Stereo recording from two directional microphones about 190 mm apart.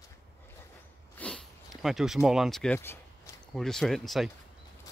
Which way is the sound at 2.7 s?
15° left (ahead or behind).